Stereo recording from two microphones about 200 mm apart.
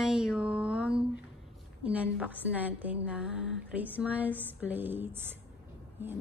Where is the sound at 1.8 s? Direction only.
5° right (ahead or behind).